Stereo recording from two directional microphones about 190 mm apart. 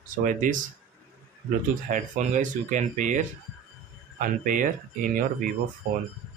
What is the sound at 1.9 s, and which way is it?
Speech, 45° right (ahead or behind).